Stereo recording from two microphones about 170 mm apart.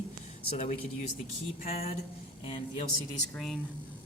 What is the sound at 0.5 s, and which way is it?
Speech, 40° left (ahead or behind).